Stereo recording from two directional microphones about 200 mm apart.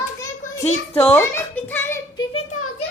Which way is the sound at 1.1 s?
10° left (ahead or behind).